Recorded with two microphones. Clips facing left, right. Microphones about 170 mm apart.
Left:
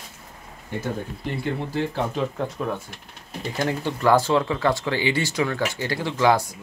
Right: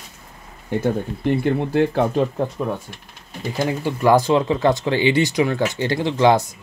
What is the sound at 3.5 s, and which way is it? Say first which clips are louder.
Speech: right 3 dB; 10° right (ahead or behind).